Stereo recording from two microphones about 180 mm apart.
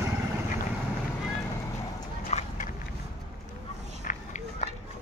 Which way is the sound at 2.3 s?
35° left (ahead or behind).